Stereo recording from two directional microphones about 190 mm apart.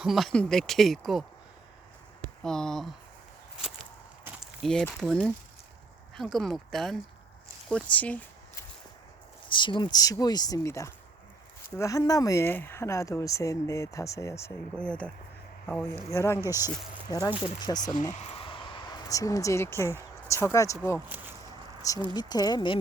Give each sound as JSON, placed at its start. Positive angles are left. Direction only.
{"t": 0.0, "sound": "speech", "side_deg": 0}
{"t": 2.4, "sound": "speech", "side_deg": 5}
{"t": 3.6, "sound": "walk", "side_deg": -5}
{"t": 4.6, "sound": "speech", "side_deg": 5}
{"t": 7.9, "sound": "a sound", "side_deg": 10}
{"t": 9.5, "sound": "speech", "side_deg": 25}
{"t": 18.1, "sound": "speech", "side_deg": 35}
{"t": 21.8, "sound": "a sound", "side_deg": 15}
{"t": 22.1, "sound": "speech", "side_deg": 20}